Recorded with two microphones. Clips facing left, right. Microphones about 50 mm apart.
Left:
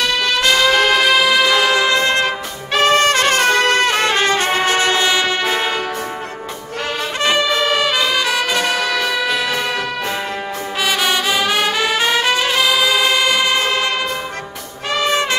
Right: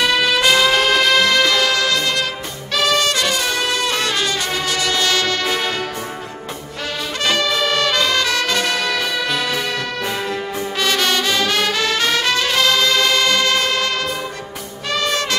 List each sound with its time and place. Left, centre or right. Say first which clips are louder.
0.0 s music: right 1 dB; centre; by 5.0 s left
5.0 s music: left 2 dB; centre
7.2 s music: left 2 dB; centre
10.8 s brass instrument: left 1 dB; centre